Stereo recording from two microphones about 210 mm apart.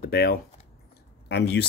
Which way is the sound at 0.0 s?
45° left (ahead or behind).